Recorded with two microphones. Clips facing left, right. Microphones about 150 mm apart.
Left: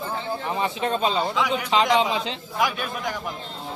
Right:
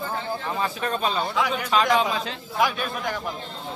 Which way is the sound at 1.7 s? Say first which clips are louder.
Left 1 dB; 20° left (ahead or behind).